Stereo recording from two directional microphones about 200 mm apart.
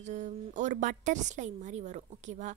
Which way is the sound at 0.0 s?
35° right (ahead or behind).